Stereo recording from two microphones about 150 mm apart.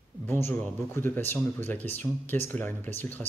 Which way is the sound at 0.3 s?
15° left (ahead or behind).